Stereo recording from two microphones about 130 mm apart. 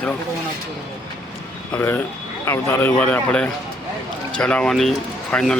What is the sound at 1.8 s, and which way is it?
Speech, 15° left (ahead or behind).